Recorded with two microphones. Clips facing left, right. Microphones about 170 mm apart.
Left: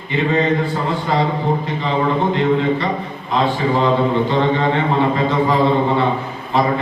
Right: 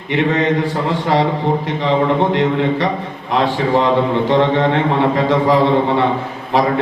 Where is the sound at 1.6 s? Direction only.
85° right.